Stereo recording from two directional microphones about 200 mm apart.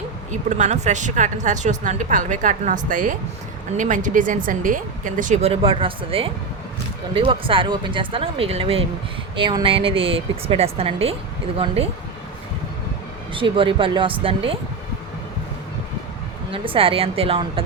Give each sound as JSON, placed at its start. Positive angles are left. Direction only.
{"t": 0.3, "sound": "speech", "side_deg": -35}
{"t": 13.3, "sound": "speech", "side_deg": -25}
{"t": 16.5, "sound": "speech", "side_deg": -25}